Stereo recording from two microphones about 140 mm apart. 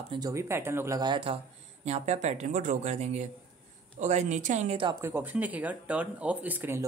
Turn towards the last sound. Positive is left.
turn(degrees=-15)  # may be behind; listen again after turning